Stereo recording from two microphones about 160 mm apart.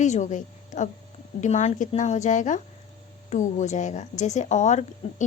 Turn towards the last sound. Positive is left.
turn(degrees=50)  # may be behind; listen again after turning